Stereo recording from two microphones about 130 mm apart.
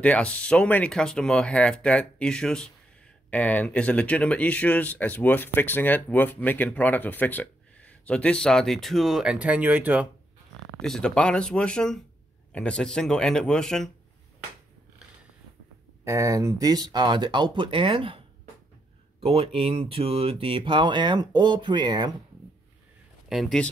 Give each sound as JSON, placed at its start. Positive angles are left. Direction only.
{"t": 0.0, "sound": "speech", "side_deg": 10}
{"t": 10.8, "sound": "speech", "side_deg": 5}
{"t": 16.0, "sound": "speech", "side_deg": -25}
{"t": 19.2, "sound": "speech", "side_deg": -45}
{"t": 23.2, "sound": "speech", "side_deg": 0}